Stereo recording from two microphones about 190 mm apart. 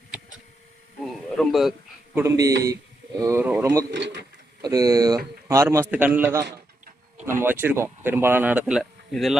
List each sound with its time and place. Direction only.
1.4 s speech: centre (ahead or behind)
2.1 s speech: 15° right (ahead or behind)
3.9 s speech: 65° right (ahead or behind)
4.6 s speech: 20° right (ahead or behind); by 9.4 s centre (ahead or behind)